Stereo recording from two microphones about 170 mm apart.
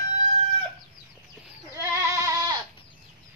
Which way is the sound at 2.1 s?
20° right (ahead or behind).